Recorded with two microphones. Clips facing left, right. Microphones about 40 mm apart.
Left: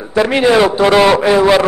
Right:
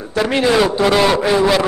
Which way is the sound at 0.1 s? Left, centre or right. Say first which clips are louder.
Left 4 dB; centre.